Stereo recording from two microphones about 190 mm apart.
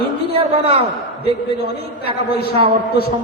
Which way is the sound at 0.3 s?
30° right (ahead or behind).